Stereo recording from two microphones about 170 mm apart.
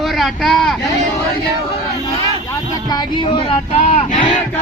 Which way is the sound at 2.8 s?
25° left (ahead or behind).